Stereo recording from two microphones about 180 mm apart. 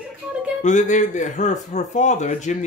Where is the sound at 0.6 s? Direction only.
40° left (ahead or behind).